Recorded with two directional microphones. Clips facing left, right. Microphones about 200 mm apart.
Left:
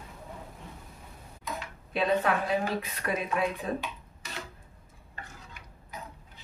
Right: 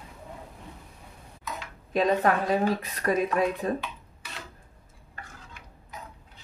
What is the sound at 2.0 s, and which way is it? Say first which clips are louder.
Speech: right 3 dB; 40° right (ahead or behind).